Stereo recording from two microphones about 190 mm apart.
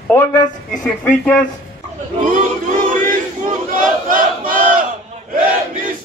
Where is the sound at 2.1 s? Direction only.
45° right (ahead or behind).